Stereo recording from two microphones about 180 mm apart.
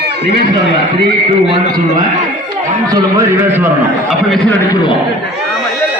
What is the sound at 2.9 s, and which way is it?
Speech, 15° right (ahead or behind).